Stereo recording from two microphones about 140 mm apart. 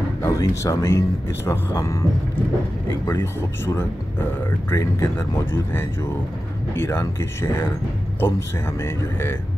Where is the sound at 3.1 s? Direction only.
20° left (ahead or behind).